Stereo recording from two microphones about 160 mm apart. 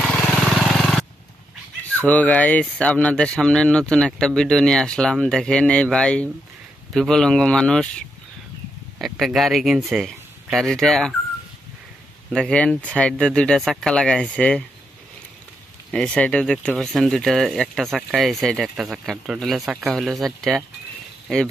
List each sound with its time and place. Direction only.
0.0 s vehicle: centre (ahead or behind)
2.0 s speech: 10° left (ahead or behind)
12.3 s speech: 5° left (ahead or behind)
15.9 s speech: 5° left (ahead or behind)